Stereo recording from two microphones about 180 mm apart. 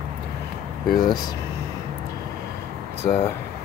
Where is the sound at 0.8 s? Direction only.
55° left (ahead or behind).